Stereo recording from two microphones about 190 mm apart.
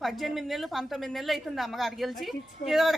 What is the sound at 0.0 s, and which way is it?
A woman's voice, centre (ahead or behind).